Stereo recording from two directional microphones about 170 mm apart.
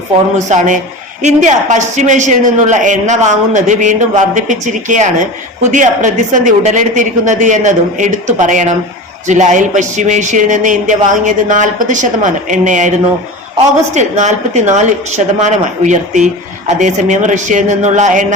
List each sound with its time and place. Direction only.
0.3 s a woman's voice: 45° right (ahead or behind)
13.9 s a woman's voice: 45° right (ahead or behind)